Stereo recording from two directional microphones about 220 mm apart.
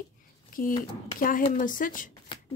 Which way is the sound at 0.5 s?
40° left (ahead or behind).